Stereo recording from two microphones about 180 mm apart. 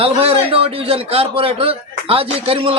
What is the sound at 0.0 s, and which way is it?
A man's voice, 30° right (ahead or behind).